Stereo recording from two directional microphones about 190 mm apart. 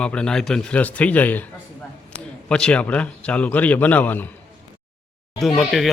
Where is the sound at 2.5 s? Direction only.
5° left (ahead or behind).